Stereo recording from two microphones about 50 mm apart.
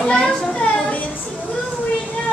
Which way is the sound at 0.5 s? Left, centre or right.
Left.